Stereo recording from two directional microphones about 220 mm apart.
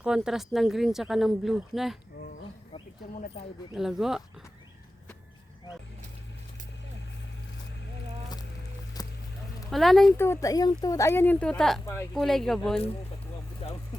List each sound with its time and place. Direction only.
0.0 s speech: 5° right (ahead or behind)
3.8 s speech: centre (ahead or behind)
9.0 s a sound: 15° left (ahead or behind)
9.6 s speech: centre (ahead or behind)